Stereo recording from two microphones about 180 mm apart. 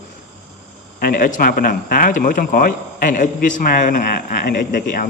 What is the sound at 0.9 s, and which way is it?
Speech, 50° left (ahead or behind).